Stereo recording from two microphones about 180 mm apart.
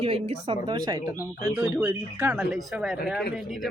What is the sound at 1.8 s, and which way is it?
A woman's voice, 10° right (ahead or behind).